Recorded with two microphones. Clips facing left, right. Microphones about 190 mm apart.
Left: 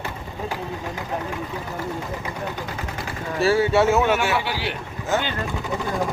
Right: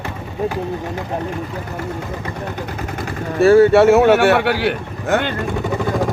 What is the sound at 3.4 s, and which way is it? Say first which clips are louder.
Speech: right 9 dB; 55° right (ahead or behind).